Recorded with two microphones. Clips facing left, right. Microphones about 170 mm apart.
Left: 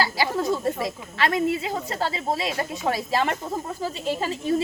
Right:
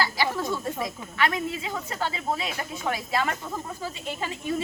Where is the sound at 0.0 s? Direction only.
35° left (ahead or behind).